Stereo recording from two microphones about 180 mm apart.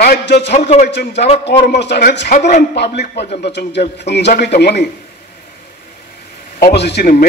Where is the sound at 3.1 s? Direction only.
65° left (ahead or behind).